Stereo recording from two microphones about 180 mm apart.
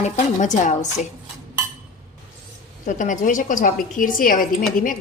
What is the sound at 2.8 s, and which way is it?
A woman's voice, 45° left (ahead or behind).